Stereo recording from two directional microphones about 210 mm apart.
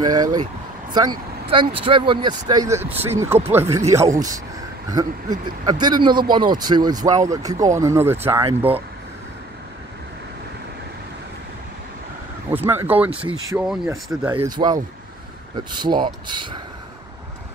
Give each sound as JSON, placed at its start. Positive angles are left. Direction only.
{"t": 0.0, "sound": "speech", "side_deg": -20}
{"t": 8.5, "sound": "speech", "side_deg": -25}
{"t": 12.6, "sound": "speech", "side_deg": -10}
{"t": 14.5, "sound": "speech", "side_deg": -20}